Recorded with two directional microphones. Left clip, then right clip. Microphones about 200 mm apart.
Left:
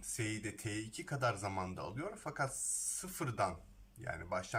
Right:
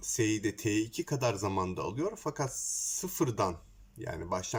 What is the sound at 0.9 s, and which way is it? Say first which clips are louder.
Speech: right 5 dB; 15° right (ahead or behind).